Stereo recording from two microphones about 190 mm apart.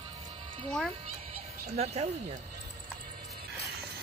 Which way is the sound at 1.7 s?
35° right (ahead or behind).